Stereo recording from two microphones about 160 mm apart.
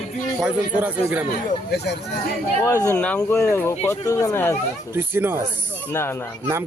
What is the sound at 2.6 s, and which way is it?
Speech, 20° left (ahead or behind).